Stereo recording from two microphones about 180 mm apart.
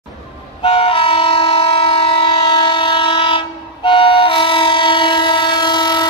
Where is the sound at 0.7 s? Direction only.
30° left (ahead or behind).